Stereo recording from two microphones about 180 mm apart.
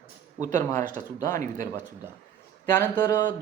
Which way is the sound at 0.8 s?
45° right (ahead or behind).